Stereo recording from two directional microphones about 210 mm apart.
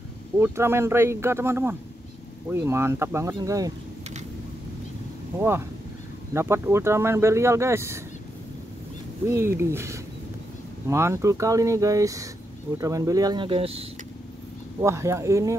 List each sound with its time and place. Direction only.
0.4 s speech: 10° right (ahead or behind)
5.4 s speech: 10° right (ahead or behind)
9.3 s speech: 10° right (ahead or behind); by 13.8 s 25° right (ahead or behind)
14.8 s speech: 15° right (ahead or behind)